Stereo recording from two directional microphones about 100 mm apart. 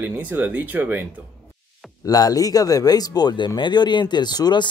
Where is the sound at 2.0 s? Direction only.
40° left (ahead or behind).